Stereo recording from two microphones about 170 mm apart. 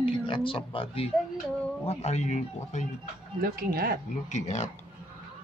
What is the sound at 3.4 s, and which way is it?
Speech, 60° right (ahead or behind).